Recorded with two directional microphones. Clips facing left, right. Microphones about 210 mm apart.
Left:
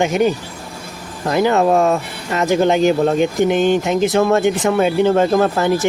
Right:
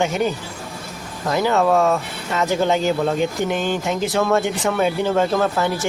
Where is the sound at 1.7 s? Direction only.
35° left (ahead or behind).